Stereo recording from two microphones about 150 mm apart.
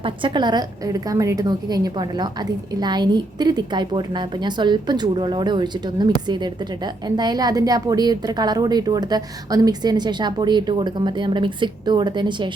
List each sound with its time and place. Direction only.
0.0 s a woman's voice: 35° right (ahead or behind)